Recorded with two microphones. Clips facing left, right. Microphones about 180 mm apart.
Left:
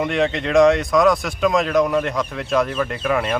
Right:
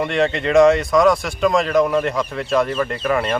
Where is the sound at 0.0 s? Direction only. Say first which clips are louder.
Right 1 dB; centre (ahead or behind).